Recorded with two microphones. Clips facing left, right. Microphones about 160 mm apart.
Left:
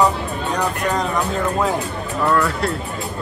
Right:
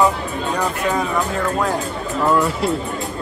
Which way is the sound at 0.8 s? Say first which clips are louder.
Right 1 dB; 5° right (ahead or behind).